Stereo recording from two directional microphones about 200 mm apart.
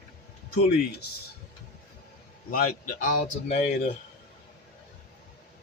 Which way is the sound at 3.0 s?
40° left (ahead or behind).